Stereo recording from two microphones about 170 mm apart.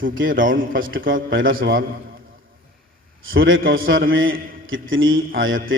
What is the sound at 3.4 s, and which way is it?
A man's voice, 60° right (ahead or behind).